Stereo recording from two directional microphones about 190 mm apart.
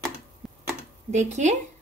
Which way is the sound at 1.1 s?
35° right (ahead or behind).